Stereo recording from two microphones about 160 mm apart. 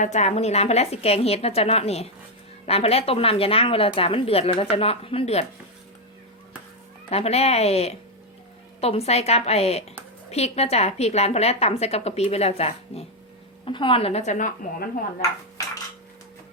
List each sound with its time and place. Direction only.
0.0 s a woman's voice: 45° left (ahead or behind)
7.1 s a woman's voice: 40° left (ahead or behind)